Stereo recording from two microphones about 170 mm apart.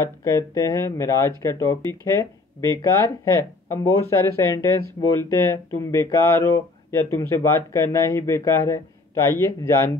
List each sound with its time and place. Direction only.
0.0 s speech: 15° left (ahead or behind)